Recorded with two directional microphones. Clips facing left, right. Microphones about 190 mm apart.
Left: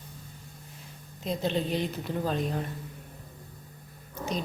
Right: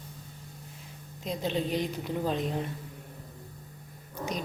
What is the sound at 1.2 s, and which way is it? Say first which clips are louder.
A woman's voice: left 2 dB; 10° right (ahead or behind).